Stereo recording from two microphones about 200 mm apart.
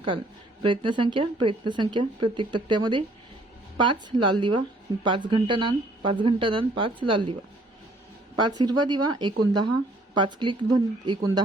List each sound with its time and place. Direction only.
0.6 s speech: 25° right (ahead or behind)
8.4 s speech: 20° right (ahead or behind)